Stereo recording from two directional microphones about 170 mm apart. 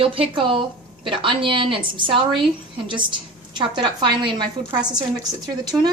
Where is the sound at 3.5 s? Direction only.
25° right (ahead or behind).